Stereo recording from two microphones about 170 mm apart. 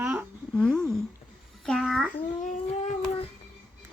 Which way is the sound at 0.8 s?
Centre (ahead or behind).